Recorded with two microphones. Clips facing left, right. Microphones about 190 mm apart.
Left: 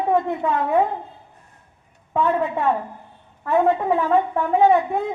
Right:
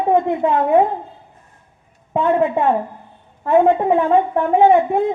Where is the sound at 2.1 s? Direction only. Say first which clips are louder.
Right 4 dB; 25° right (ahead or behind).